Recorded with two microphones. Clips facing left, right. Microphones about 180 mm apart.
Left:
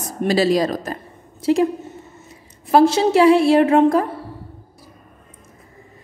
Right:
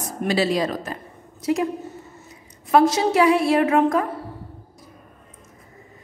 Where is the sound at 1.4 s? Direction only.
30° left (ahead or behind).